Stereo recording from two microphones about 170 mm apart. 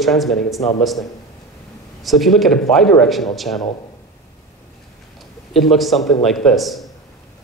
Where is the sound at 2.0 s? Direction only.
Centre (ahead or behind).